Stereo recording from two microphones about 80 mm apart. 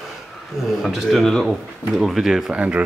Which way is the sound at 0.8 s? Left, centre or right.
Centre.